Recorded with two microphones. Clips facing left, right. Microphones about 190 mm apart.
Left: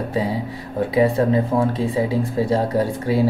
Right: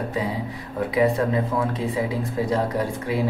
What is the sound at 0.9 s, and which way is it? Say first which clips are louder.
Speech: left 4 dB; 30° left (ahead or behind).